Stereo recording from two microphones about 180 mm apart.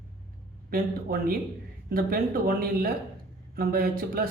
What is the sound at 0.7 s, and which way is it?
A man's voice, 55° right (ahead or behind).